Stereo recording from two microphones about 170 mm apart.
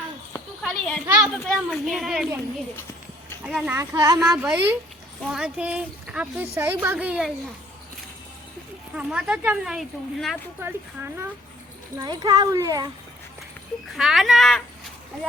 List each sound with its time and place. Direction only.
0.6 s children playing: 5° left (ahead or behind)
1.2 s speech: centre (ahead or behind)
3.4 s speech: 10° right (ahead or behind)
3.9 s a child's voice: 20° right (ahead or behind)
4.2 s speech: 5° right (ahead or behind)
9.0 s speech: 5° right (ahead or behind)
10.6 s a child's voice: 15° right (ahead or behind)
13.9 s speech: centre (ahead or behind)